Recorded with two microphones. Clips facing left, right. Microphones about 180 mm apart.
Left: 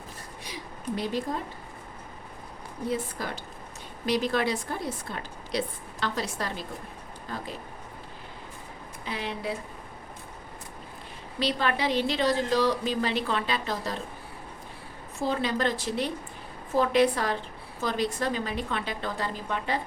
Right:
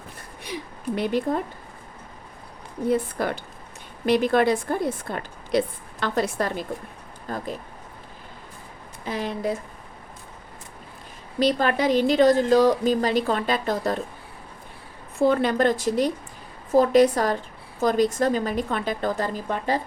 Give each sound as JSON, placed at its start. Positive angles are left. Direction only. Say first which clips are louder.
{"t": 0.4, "sound": "a sound", "louder": "right 5 dB", "side_deg": -60}
{"t": 2.9, "sound": "a woman's voice", "louder": "right 8 dB", "side_deg": -55}
{"t": 9.0, "sound": "a woman's voice", "louder": "right 6 dB", "side_deg": -45}
{"t": 11.3, "sound": "a woman's voice", "louder": "right 6 dB", "side_deg": -45}
{"t": 15.2, "sound": "a woman's voice", "louder": "right 8 dB", "side_deg": -55}